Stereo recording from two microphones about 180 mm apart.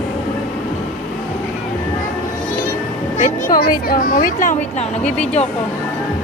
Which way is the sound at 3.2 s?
45° left (ahead or behind).